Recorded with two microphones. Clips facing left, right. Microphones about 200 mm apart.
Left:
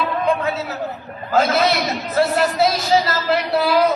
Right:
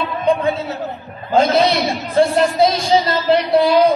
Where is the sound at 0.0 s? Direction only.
30° right (ahead or behind).